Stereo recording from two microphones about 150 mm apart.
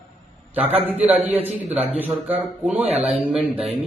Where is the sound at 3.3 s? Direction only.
5° right (ahead or behind).